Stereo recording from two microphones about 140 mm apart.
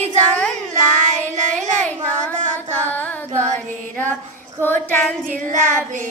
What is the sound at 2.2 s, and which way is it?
Child singing, 10° left (ahead or behind).